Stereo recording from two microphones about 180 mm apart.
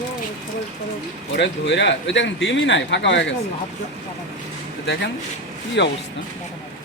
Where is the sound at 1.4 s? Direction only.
80° left.